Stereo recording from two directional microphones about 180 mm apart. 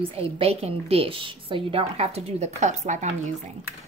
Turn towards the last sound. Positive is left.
turn(degrees=-40)  # may be behind; listen again after turning